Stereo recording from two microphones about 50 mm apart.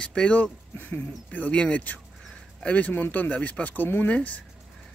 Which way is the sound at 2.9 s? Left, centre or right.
Left.